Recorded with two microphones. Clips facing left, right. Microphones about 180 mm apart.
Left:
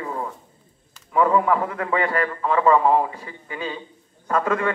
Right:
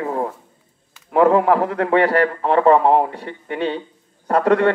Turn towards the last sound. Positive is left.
turn(degrees=-70)  # may be behind; listen again after turning